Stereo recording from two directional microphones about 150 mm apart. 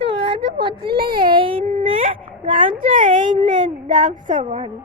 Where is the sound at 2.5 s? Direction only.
60° right (ahead or behind); by 4.7 s 45° right (ahead or behind).